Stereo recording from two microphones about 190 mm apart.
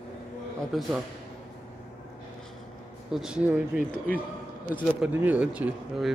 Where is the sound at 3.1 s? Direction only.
5° right (ahead or behind).